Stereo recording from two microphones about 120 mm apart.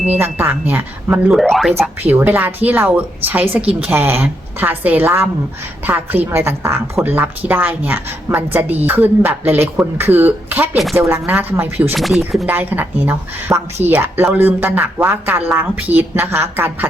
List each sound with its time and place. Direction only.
0.0 s a woman's voice: 15° right (ahead or behind)
1.3 s speech: centre (ahead or behind)
1.8 s a woman's voice: 15° right (ahead or behind)
11.9 s speech: centre (ahead or behind)
12.5 s a woman's voice: 15° right (ahead or behind)